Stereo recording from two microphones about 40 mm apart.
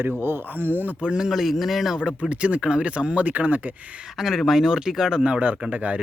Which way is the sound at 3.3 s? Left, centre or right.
Right.